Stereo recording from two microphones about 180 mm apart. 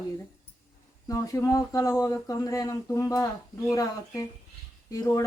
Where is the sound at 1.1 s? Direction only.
20° left (ahead or behind).